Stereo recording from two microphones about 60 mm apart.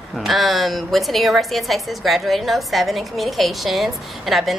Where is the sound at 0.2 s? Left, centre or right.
Centre.